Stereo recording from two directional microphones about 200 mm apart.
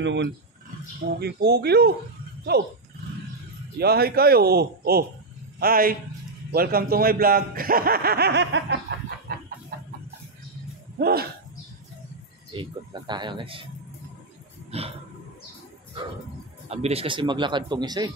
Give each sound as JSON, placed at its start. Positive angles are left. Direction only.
{"t": 0.0, "sound": "speech", "side_deg": -65}
{"t": 1.0, "sound": "a man's voice", "side_deg": -50}
{"t": 3.7, "sound": "a man's voice", "side_deg": -50}
{"t": 9.3, "sound": "chicken", "side_deg": -55}
{"t": 9.7, "sound": "a sound", "side_deg": -50}
{"t": 11.0, "sound": "speech", "side_deg": -50}
{"t": 12.5, "sound": "speech", "side_deg": -20}
{"t": 14.7, "sound": "roaring cats", "side_deg": -30}
{"t": 16.6, "sound": "speech", "side_deg": -30}